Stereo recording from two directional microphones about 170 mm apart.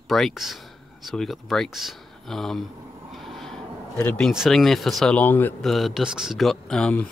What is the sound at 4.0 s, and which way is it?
Speech, 10° left (ahead or behind).